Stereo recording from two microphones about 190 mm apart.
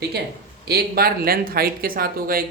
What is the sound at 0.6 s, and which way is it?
Speech, 55° right (ahead or behind).